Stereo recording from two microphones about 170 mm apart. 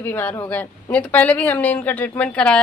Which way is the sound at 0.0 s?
10° left (ahead or behind).